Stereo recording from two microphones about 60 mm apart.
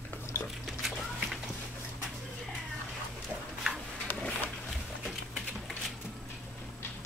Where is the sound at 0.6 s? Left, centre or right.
Centre.